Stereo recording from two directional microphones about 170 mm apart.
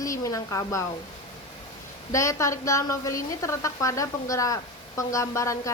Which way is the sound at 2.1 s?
20° left (ahead or behind).